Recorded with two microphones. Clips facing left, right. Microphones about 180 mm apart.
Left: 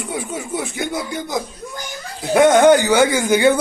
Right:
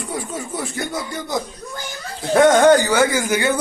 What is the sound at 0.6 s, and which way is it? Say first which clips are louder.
Speech: left 2 dB; 15° left (ahead or behind).